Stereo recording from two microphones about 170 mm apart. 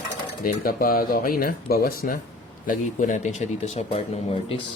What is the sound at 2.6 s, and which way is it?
Speech, 50° left (ahead or behind).